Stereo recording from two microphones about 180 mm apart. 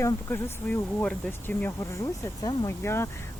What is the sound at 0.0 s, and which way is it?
Speech, 15° left (ahead or behind).